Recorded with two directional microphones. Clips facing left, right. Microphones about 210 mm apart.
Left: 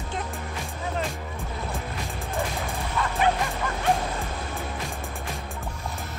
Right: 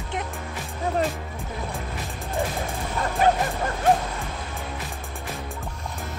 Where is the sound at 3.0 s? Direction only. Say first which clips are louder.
Right 1 dB; 40° right (ahead or behind).